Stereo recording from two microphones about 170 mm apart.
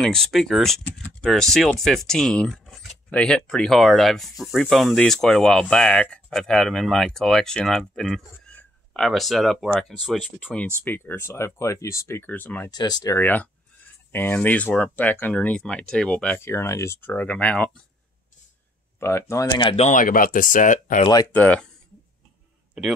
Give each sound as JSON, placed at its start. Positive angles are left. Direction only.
{"t": 0.0, "sound": "speech", "side_deg": 0}
{"t": 12.7, "sound": "speech", "side_deg": 25}
{"t": 18.9, "sound": "speech", "side_deg": 15}
{"t": 19.6, "sound": "speech", "side_deg": 40}
{"t": 21.3, "sound": "speech", "side_deg": 10}
{"t": 22.8, "sound": "a man's voice", "side_deg": 0}